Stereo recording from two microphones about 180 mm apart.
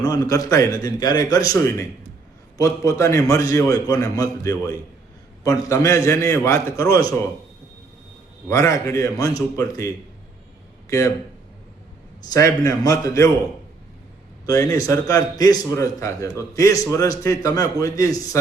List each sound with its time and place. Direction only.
0.0 s a man's voice: 20° left (ahead or behind)
8.4 s a man's voice: 15° left (ahead or behind)
12.3 s a man's voice: 20° left (ahead or behind)
14.4 s speech: 20° left (ahead or behind)